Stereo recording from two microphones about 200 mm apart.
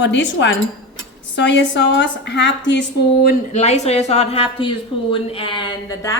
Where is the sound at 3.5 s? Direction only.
35° left (ahead or behind).